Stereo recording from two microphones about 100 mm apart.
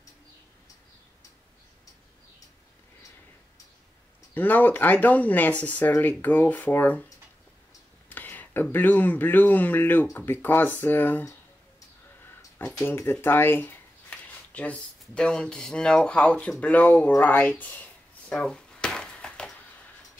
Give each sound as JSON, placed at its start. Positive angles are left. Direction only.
{"t": 4.3, "sound": "speech", "side_deg": 15}
{"t": 8.1, "sound": "speech", "side_deg": 20}
{"t": 12.8, "sound": "speech", "side_deg": 20}
{"t": 18.3, "sound": "a sound", "side_deg": 5}